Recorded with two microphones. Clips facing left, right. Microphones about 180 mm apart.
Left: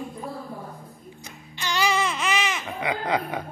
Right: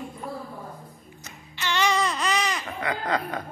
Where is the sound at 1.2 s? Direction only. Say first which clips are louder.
Right 1 dB; 15° left (ahead or behind).